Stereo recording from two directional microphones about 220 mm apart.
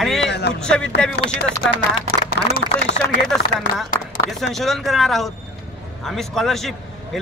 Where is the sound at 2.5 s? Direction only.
50° left (ahead or behind).